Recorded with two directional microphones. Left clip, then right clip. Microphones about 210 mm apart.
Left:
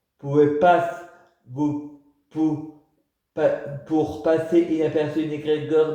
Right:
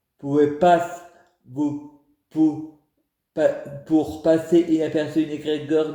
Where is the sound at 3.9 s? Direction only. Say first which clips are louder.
Right 2 dB; 55° right (ahead or behind).